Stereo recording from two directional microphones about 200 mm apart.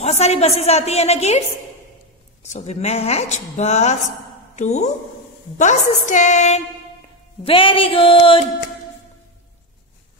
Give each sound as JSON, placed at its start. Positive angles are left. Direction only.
{"t": 0.0, "sound": "a woman's voice", "side_deg": 30}
{"t": 2.5, "sound": "a woman's voice", "side_deg": 35}
{"t": 7.4, "sound": "music", "side_deg": 25}